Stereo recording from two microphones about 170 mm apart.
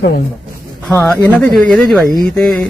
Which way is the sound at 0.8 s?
10° left (ahead or behind).